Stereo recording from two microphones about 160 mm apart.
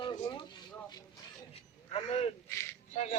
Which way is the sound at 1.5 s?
40° left (ahead or behind).